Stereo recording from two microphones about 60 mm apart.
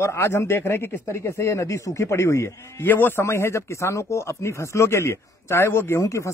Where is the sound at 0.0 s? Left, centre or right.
Left.